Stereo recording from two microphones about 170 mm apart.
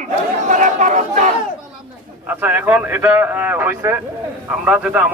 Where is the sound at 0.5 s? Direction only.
45° right (ahead or behind).